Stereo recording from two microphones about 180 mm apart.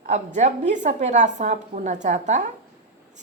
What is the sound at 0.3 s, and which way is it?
A woman's voice, 40° right (ahead or behind).